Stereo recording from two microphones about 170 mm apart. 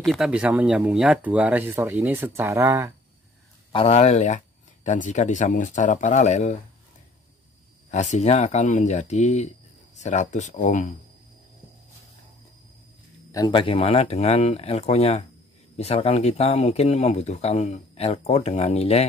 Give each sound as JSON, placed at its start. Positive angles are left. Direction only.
{"t": 0.0, "sound": "speech", "side_deg": 0}
{"t": 3.7, "sound": "speech", "side_deg": 35}
{"t": 7.9, "sound": "speech", "side_deg": 45}
{"t": 13.3, "sound": "speech", "side_deg": 25}